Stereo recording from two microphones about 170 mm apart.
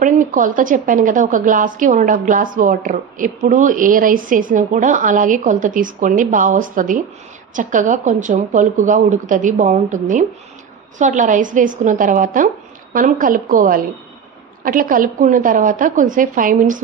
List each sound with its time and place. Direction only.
0.0 s a woman's voice: 50° right (ahead or behind)